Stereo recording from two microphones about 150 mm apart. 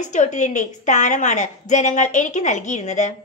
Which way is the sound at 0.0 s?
55° left (ahead or behind).